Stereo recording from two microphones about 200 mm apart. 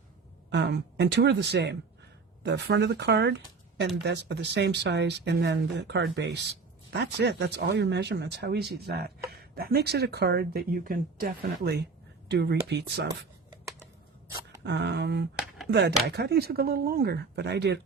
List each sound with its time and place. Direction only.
0.5 s speech: 60° right (ahead or behind)
14.6 s speech: 60° right (ahead or behind)